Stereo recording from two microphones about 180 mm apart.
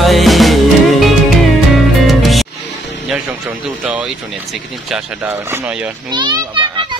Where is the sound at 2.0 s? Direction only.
Centre (ahead or behind).